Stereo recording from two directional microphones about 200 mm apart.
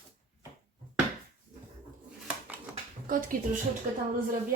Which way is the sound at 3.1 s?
40° right (ahead or behind).